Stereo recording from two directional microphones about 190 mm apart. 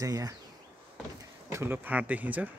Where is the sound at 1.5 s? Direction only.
10° right (ahead or behind).